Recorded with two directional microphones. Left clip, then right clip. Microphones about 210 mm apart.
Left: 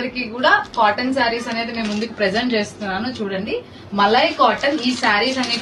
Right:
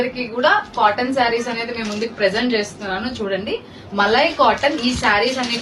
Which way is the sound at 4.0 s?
35° right (ahead or behind).